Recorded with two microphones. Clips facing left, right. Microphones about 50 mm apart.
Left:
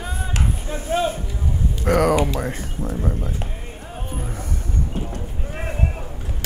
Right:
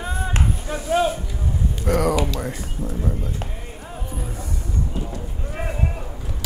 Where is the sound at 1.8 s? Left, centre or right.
Left.